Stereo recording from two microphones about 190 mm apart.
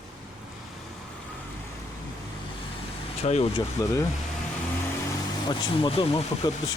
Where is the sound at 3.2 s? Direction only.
35° left (ahead or behind).